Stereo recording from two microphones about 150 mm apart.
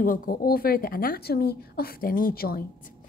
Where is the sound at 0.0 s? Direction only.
60° left (ahead or behind); by 2.6 s 85° left.